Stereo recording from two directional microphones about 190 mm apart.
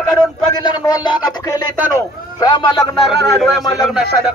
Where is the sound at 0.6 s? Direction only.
20° left (ahead or behind).